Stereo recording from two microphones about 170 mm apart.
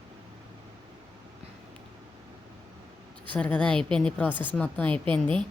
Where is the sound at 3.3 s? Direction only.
5° left (ahead or behind).